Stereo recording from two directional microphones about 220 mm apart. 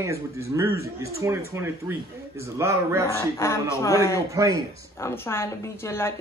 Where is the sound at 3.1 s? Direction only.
10° left (ahead or behind).